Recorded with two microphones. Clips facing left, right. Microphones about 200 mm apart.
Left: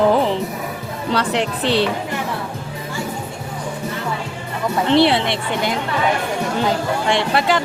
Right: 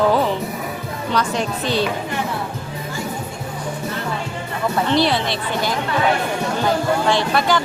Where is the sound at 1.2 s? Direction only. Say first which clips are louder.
Left 2 dB; 75° left (ahead or behind).